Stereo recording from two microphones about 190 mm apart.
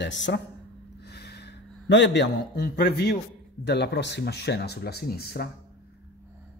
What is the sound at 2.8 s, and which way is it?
Speech, 55° left (ahead or behind).